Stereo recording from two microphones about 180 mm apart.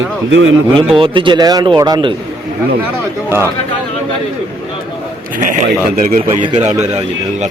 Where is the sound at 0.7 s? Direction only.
30° right (ahead or behind).